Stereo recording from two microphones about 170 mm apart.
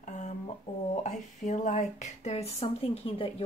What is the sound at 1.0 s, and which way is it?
Speech, 45° left (ahead or behind).